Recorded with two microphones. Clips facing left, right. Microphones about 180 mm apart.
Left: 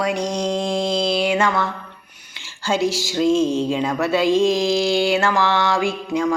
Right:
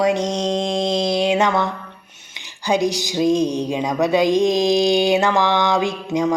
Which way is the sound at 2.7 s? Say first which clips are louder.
Right 1 dB; 15° right (ahead or behind).